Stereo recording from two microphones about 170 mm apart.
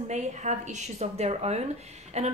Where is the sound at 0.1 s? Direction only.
45° right (ahead or behind).